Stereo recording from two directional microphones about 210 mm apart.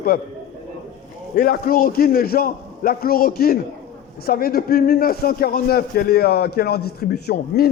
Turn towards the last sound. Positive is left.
turn(degrees=50)  # may be behind; listen again after turning